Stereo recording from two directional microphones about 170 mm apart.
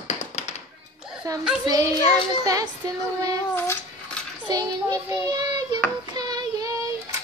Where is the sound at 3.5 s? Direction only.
15° left (ahead or behind).